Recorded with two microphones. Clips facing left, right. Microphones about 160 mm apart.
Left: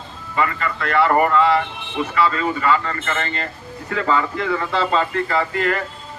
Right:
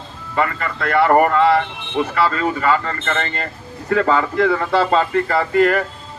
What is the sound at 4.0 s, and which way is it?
Speech, 45° right (ahead or behind).